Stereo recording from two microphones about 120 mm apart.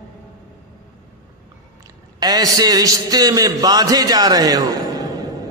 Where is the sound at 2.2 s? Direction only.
30° right (ahead or behind).